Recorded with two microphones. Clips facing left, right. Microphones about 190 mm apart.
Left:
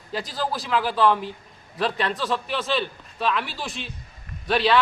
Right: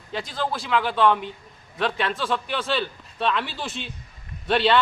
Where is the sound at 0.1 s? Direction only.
5° left (ahead or behind).